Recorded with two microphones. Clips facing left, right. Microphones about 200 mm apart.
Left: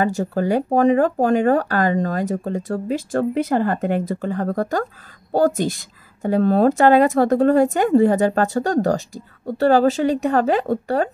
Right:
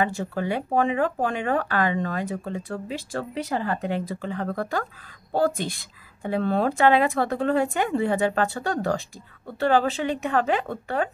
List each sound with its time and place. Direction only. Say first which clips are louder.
0.0 s speech: left 6 dB; 40° left (ahead or behind)